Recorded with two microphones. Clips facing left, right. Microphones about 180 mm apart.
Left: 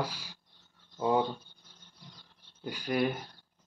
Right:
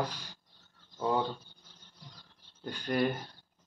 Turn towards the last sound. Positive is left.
turn(degrees=5)  # may be behind; listen again after turning